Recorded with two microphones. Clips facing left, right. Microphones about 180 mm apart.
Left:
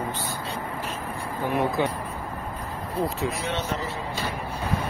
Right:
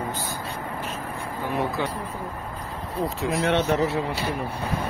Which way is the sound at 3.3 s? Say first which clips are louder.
Right 7 dB; 60° right (ahead or behind).